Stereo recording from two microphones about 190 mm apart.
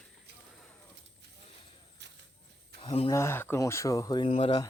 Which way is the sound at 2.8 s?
30° left (ahead or behind).